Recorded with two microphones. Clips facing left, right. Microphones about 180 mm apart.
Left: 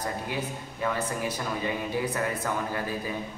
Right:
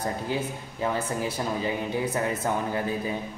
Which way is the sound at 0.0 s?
30° right (ahead or behind).